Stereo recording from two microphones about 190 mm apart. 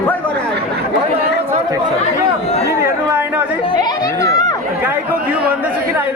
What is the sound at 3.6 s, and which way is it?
Chatter, 20° left (ahead or behind).